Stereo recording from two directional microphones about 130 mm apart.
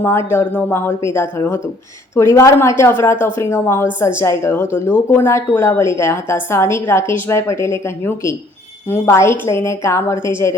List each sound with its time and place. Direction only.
0.0 s a woman's voice: 15° left (ahead or behind)